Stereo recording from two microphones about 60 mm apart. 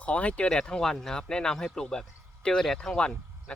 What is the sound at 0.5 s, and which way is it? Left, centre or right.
A man's voice, centre.